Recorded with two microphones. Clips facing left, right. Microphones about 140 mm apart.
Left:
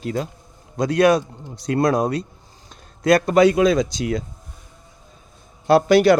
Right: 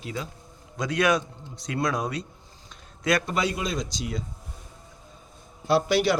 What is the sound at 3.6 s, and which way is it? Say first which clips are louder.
Speech: left 13 dB; 70° left (ahead or behind).